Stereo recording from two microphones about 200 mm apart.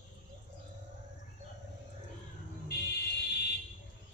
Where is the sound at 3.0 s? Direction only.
55° left (ahead or behind).